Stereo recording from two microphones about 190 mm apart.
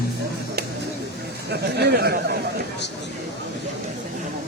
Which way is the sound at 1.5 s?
60° right (ahead or behind).